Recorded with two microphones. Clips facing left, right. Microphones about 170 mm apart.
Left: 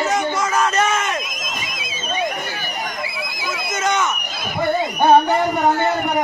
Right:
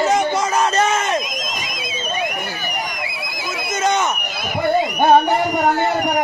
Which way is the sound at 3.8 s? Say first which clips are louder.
Right 2 dB; 30° right (ahead or behind).